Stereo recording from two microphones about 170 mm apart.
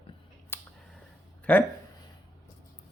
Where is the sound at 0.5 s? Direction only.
15° left (ahead or behind).